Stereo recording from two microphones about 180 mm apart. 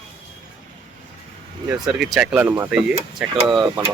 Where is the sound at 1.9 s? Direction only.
5° right (ahead or behind).